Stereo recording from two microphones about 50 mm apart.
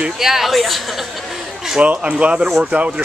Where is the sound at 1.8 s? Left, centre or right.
Right.